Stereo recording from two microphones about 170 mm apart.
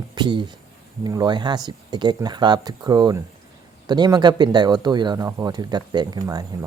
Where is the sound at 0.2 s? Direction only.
25° right (ahead or behind).